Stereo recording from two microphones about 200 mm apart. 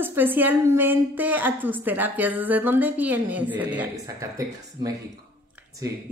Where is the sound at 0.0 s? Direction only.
10° right (ahead or behind).